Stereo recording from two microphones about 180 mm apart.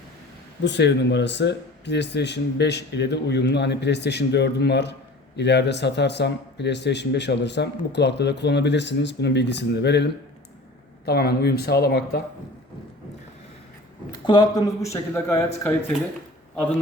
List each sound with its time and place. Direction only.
0.6 s speech: 75° left (ahead or behind)
14.3 s speech: 25° left (ahead or behind)